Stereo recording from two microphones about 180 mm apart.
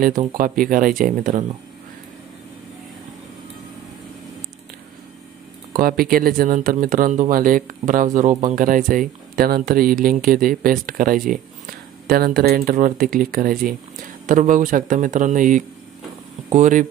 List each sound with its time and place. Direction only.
0.0 s speech: 50° right (ahead or behind)
5.7 s speech: 55° right (ahead or behind)